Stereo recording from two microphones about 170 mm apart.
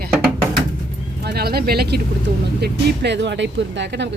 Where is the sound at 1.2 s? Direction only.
65° right (ahead or behind).